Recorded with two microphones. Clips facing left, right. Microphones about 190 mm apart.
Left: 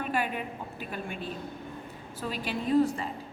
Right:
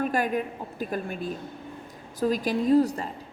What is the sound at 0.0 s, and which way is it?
A woman's voice, 40° right (ahead or behind).